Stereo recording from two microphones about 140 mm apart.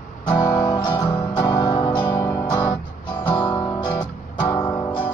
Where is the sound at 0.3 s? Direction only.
20° left (ahead or behind).